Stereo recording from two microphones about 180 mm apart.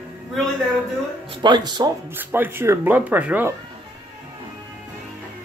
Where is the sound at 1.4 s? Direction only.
25° right (ahead or behind).